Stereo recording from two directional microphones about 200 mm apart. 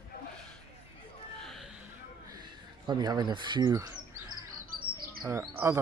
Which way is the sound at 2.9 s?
20° right (ahead or behind).